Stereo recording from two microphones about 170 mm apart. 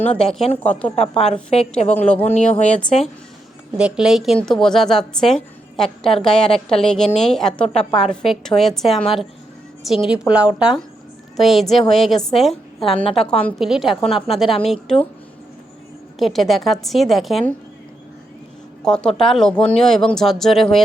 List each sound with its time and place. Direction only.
0.0 s a woman's voice: 5° left (ahead or behind)
0.4 s a woman's voice: 35° left (ahead or behind)
2.6 s a woman's voice: 5° left (ahead or behind)
10.1 s a woman's voice: 5° right (ahead or behind)
16.1 s a woman's voice: centre (ahead or behind)
18.8 s a woman's voice: 5° left (ahead or behind)